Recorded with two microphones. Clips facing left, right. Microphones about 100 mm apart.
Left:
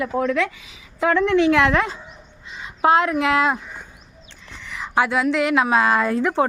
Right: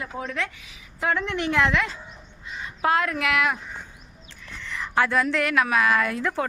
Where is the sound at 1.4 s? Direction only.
90° left.